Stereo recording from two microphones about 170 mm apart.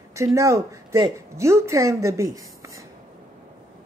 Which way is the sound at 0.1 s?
15° right (ahead or behind).